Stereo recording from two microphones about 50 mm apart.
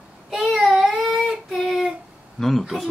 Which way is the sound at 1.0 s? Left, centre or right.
Centre.